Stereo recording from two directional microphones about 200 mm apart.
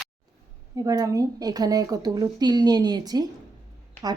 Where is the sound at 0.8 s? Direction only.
15° right (ahead or behind).